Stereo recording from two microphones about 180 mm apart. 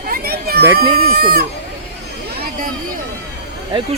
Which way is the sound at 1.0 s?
60° right (ahead or behind).